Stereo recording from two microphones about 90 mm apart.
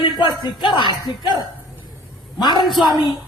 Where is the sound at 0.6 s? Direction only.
55° left (ahead or behind).